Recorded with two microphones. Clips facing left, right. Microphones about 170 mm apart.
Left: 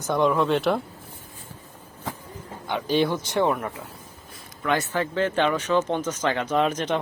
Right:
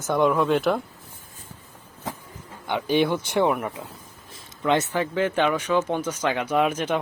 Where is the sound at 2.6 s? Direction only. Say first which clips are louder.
Right 1 dB; 15° right (ahead or behind).